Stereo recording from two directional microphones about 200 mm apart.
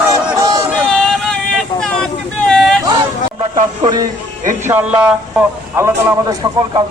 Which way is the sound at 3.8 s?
20° right (ahead or behind).